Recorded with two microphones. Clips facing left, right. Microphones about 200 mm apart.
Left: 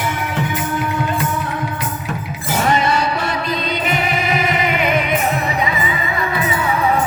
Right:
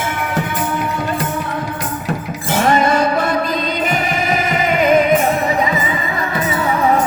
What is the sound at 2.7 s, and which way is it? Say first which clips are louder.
Music: right 4 dB; 50° right (ahead or behind).